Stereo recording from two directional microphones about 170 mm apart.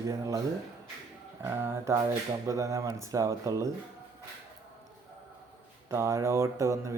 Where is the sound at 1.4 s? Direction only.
15° right (ahead or behind).